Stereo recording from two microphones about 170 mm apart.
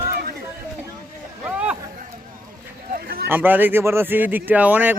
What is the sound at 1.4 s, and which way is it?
Chatter, 5° right (ahead or behind).